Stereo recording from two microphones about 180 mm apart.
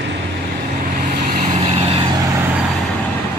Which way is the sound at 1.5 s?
35° right (ahead or behind).